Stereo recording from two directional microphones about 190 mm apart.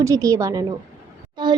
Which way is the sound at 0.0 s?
15° right (ahead or behind).